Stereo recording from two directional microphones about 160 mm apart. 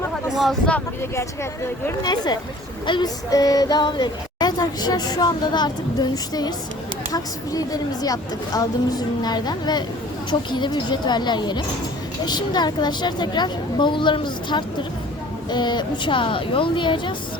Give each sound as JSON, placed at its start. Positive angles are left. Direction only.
{"t": 0.3, "sound": "speech", "side_deg": 5}
{"t": 2.0, "sound": "a woman's voice", "side_deg": 25}